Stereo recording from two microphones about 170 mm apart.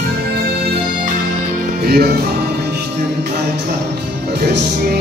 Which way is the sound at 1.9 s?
65° right (ahead or behind).